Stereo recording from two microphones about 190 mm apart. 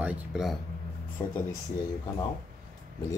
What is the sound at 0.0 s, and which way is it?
Speech, 5° right (ahead or behind).